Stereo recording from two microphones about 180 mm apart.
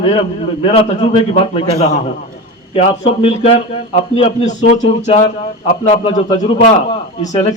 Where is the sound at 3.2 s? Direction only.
30° left (ahead or behind).